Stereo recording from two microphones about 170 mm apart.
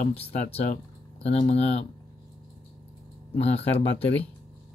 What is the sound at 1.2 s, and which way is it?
Speech, 35° left (ahead or behind).